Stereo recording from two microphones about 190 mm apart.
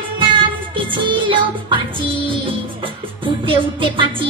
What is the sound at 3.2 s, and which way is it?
Music, 25° right (ahead or behind).